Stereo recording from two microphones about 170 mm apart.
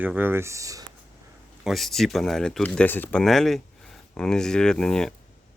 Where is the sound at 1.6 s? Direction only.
Centre (ahead or behind).